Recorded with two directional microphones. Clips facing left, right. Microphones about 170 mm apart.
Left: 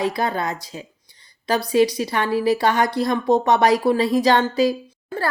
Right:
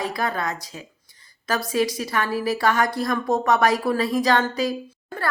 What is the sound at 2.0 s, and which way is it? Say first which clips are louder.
A woman's voice: left 4 dB; 25° left (ahead or behind).